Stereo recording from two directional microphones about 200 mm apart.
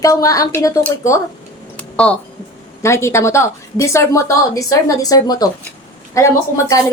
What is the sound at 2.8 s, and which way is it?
Speech, 15° left (ahead or behind).